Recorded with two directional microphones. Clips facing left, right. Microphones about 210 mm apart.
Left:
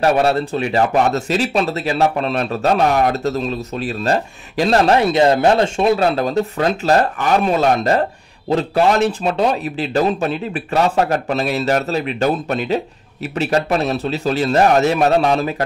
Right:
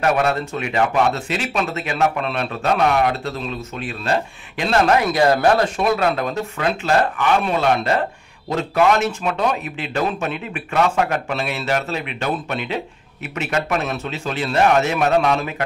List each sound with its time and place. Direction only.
0.0 s speech: 30° left (ahead or behind)